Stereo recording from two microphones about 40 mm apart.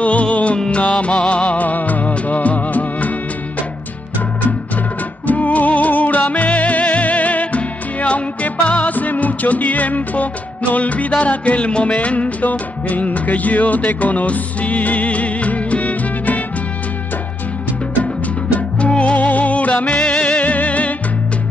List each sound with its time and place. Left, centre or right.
0.0 s music: left
1.6 s music: left
5.2 s music: left
18.8 s music: left
19.1 s music: left